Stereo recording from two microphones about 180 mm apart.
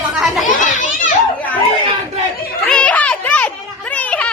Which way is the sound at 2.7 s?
5° left (ahead or behind).